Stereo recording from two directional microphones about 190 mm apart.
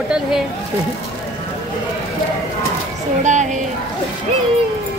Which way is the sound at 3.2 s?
40° right (ahead or behind).